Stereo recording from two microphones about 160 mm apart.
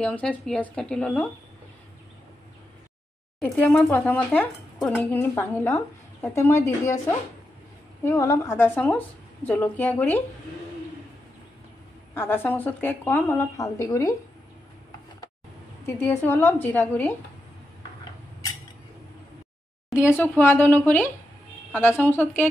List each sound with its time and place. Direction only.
0.0 s a woman's voice: 5° left (ahead or behind)
3.3 s a woman's voice: 5° left (ahead or behind)
8.0 s a woman's voice: 20° left (ahead or behind)
12.1 s a woman's voice: 15° left (ahead or behind)
15.8 s a woman's voice: 15° left (ahead or behind)
20.0 s a woman's voice: 15° left (ahead or behind)